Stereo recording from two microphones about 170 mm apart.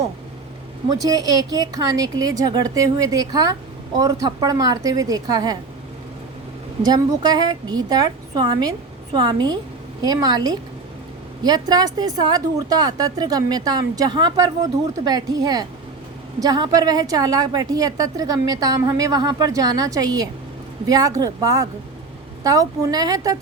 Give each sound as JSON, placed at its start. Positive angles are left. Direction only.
{"t": 1.0, "sound": "a woman's voice", "side_deg": -20}
{"t": 6.8, "sound": "a woman's voice", "side_deg": -25}